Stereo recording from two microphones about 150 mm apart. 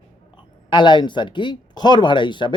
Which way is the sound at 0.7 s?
30° left (ahead or behind).